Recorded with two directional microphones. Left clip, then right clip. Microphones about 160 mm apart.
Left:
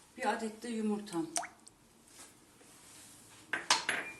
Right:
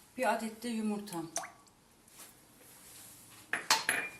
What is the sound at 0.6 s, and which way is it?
Speech, 20° left (ahead or behind).